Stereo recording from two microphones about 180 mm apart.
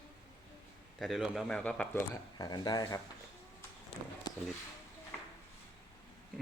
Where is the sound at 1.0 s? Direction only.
Centre (ahead or behind).